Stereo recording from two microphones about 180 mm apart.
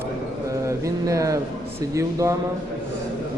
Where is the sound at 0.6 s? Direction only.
15° right (ahead or behind).